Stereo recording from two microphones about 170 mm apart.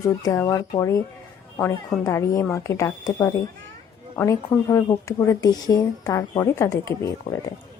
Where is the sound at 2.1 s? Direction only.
15° left (ahead or behind).